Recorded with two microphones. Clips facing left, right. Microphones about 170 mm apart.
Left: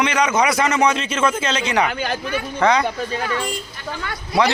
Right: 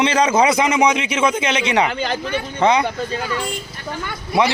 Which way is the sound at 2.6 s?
20° right (ahead or behind).